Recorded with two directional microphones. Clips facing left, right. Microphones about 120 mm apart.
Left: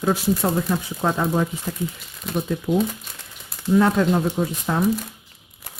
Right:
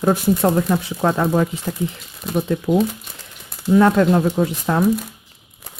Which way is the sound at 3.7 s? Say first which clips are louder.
Right 4 dB; 80° right.